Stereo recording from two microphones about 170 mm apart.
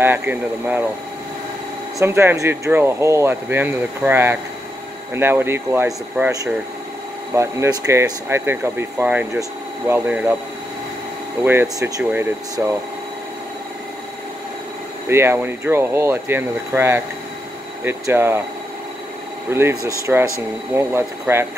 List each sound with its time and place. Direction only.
0.0 s speech: 10° right (ahead or behind)
2.0 s speech: 15° right (ahead or behind)
11.4 s speech: 15° right (ahead or behind)
15.0 s speech: 15° right (ahead or behind)
19.5 s speech: 15° right (ahead or behind)
20.1 s speech: 5° right (ahead or behind)